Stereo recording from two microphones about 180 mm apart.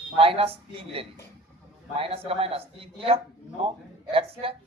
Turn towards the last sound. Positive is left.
turn(degrees=-30)  # may be behind; listen again after turning